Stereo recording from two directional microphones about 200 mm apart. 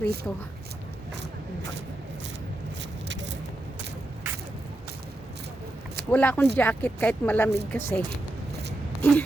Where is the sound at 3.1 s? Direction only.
65° right (ahead or behind).